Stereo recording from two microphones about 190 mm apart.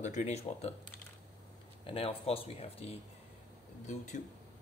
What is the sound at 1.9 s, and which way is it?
Speech, 30° left (ahead or behind).